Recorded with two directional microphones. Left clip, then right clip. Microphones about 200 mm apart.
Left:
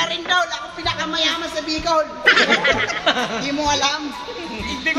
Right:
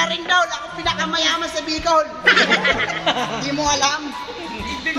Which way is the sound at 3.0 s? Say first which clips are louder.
Left 1 dB; 35° left (ahead or behind).